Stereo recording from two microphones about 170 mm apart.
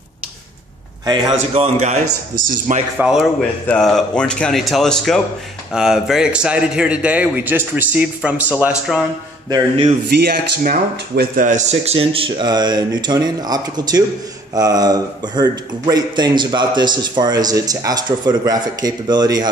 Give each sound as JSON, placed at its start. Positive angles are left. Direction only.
{"t": 1.0, "sound": "a man's voice", "side_deg": -25}
{"t": 1.3, "sound": "speech", "side_deg": -40}
{"t": 3.0, "sound": "a man's voice", "side_deg": 0}
{"t": 9.5, "sound": "speech", "side_deg": -35}
{"t": 10.0, "sound": "speech", "side_deg": -60}